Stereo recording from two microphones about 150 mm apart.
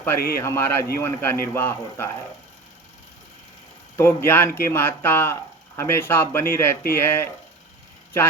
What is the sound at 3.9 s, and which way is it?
Speech, 15° left (ahead or behind).